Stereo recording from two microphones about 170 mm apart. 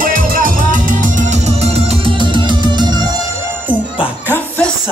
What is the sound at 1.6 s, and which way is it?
Music, 30° right (ahead or behind).